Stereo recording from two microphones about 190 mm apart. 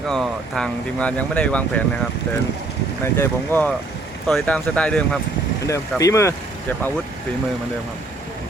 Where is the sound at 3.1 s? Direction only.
10° left (ahead or behind).